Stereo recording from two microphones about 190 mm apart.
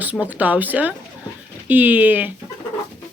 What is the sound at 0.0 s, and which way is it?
Speech, 10° right (ahead or behind).